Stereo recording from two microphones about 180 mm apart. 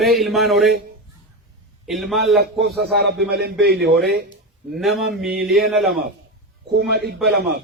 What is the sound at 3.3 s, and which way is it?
Speech, 60° right (ahead or behind).